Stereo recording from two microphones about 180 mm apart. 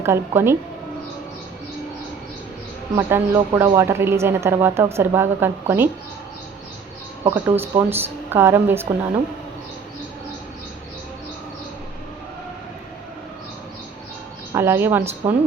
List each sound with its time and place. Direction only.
0.0 s a woman's voice: 15° right (ahead or behind)
2.9 s a woman's voice: 15° right (ahead or behind)
7.3 s a woman's voice: 15° right (ahead or behind)
14.5 s a woman's voice: 15° right (ahead or behind)